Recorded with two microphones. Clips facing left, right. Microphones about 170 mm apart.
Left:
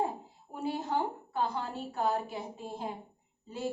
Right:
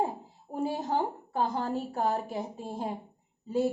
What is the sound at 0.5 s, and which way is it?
A woman's voice, 40° right (ahead or behind).